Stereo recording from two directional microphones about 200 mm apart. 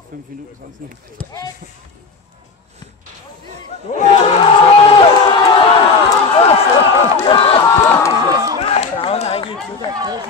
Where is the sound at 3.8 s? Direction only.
30° left (ahead or behind).